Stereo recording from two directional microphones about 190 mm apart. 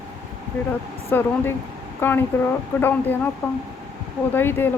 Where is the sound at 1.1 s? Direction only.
10° left (ahead or behind).